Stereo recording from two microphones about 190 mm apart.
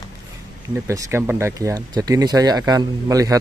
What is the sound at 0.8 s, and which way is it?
Speech, 15° right (ahead or behind).